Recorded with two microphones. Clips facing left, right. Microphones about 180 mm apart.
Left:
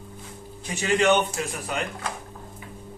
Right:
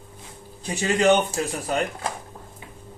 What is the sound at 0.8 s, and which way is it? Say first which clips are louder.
Speech: right 2 dB; 35° right (ahead or behind).